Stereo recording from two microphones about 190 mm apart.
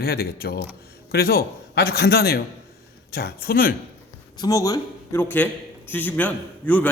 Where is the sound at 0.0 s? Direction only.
55° left (ahead or behind).